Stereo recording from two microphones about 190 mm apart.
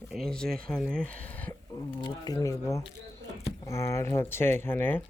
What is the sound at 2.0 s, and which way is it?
Speech, 20° left (ahead or behind).